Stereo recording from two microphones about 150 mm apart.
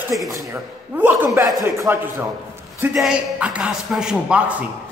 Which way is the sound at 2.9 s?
5° right (ahead or behind).